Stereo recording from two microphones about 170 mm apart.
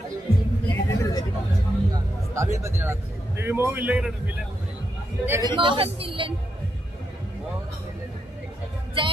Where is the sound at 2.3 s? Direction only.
15° right (ahead or behind).